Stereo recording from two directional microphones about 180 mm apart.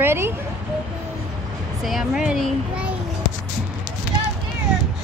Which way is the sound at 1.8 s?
Centre (ahead or behind).